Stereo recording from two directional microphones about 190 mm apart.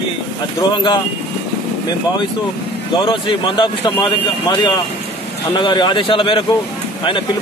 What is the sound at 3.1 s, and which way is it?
Speech, 25° left (ahead or behind).